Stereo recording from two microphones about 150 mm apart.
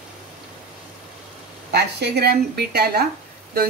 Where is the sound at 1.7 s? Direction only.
90° right.